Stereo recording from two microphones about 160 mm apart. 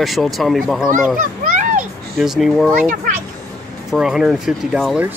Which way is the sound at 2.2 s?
Centre (ahead or behind).